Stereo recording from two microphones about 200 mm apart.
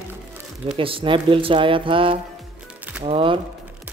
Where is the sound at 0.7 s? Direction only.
25° right (ahead or behind).